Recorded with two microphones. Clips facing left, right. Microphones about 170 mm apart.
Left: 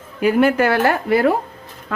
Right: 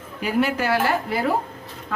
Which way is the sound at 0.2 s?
55° left (ahead or behind).